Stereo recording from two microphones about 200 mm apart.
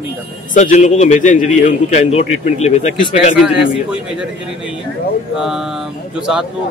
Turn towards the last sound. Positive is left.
turn(degrees=-5)  # may be behind; listen again after turning